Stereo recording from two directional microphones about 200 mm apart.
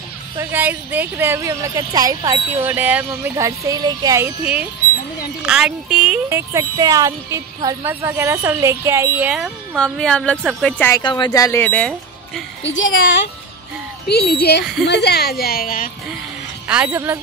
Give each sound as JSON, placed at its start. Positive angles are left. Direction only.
{"t": 0.4, "sound": "speech", "side_deg": -10}
{"t": 5.4, "sound": "speech", "side_deg": -5}
{"t": 11.0, "sound": "speech", "side_deg": 20}
{"t": 12.6, "sound": "a woman's voice", "side_deg": 70}
{"t": 12.9, "sound": "speech", "side_deg": 45}
{"t": 16.6, "sound": "speech", "side_deg": -5}